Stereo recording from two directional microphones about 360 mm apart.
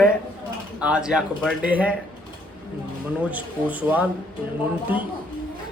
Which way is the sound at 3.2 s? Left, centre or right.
Centre.